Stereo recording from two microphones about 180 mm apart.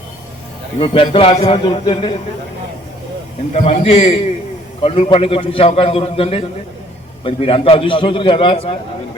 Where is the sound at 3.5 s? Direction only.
35° left (ahead or behind).